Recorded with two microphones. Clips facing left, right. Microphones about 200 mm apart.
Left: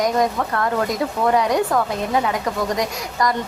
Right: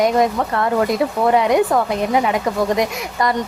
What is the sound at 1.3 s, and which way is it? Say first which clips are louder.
A woman's voice: right 4 dB; 20° right (ahead or behind).